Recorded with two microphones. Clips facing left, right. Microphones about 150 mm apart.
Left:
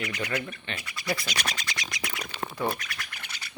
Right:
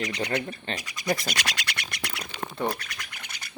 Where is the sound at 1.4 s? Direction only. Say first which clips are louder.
Right 1 dB; 80° right.